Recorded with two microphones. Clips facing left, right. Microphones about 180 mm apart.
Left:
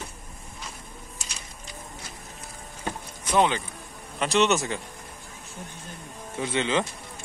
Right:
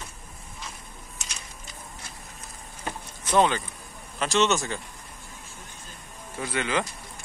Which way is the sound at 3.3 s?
15° left (ahead or behind).